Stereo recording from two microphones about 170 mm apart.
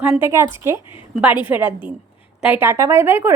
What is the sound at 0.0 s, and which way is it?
Speech, 10° right (ahead or behind).